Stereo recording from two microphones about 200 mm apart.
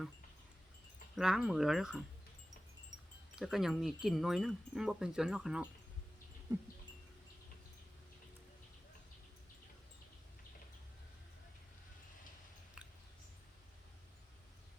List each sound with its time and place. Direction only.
1.1 s wind chime: centre (ahead or behind)
2.9 s wind chime: 20° right (ahead or behind)
3.3 s wind chime: centre (ahead or behind)